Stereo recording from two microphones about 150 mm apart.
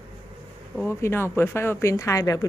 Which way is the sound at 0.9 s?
15° left (ahead or behind).